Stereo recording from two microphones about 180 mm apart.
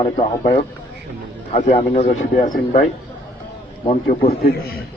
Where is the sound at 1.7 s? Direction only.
35° left (ahead or behind).